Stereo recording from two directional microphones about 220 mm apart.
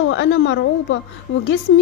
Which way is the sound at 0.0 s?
60° left (ahead or behind).